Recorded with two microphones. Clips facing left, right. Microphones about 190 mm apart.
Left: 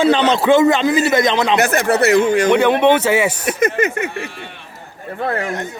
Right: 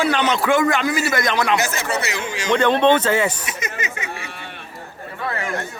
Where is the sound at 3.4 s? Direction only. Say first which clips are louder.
Left 12 dB; 55° left (ahead or behind).